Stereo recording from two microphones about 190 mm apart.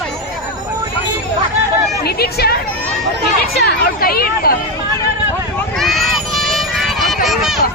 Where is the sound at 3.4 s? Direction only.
55° left (ahead or behind).